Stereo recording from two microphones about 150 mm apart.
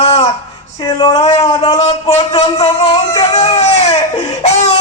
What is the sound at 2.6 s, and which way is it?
Speech, 40° left (ahead or behind).